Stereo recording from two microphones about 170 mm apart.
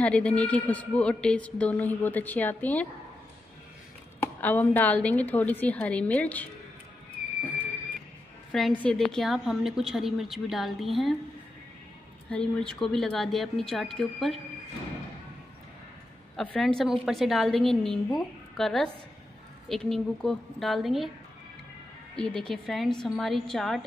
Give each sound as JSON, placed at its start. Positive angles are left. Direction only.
{"t": 0.0, "sound": "a woman's voice", "side_deg": 5}
{"t": 4.2, "sound": "a woman's voice", "side_deg": 10}
{"t": 8.5, "sound": "a woman's voice", "side_deg": 0}
{"t": 12.3, "sound": "a woman's voice", "side_deg": 5}
{"t": 16.3, "sound": "a woman's voice", "side_deg": 5}
{"t": 22.1, "sound": "a woman's voice", "side_deg": 5}